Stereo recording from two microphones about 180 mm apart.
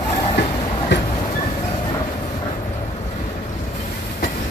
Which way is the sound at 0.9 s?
75° left (ahead or behind).